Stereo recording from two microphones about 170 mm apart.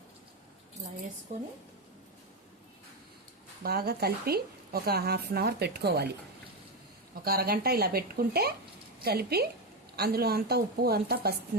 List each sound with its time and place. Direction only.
3.6 s a woman's voice: 65° right (ahead or behind)
7.3 s a woman's voice: 65° right (ahead or behind)